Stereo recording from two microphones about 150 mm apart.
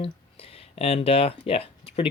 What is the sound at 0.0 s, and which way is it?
Speech, 40° left (ahead or behind).